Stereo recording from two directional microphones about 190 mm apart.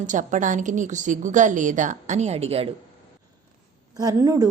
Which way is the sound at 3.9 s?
20° right (ahead or behind).